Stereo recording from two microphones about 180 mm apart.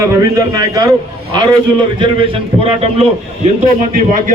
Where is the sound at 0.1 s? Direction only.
20° right (ahead or behind).